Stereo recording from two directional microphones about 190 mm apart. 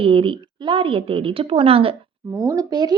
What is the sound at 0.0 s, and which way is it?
Speech, 30° right (ahead or behind).